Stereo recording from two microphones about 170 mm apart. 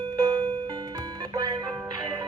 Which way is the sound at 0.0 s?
25° right (ahead or behind).